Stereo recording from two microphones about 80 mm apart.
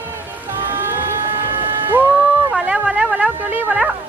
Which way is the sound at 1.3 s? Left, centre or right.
Right.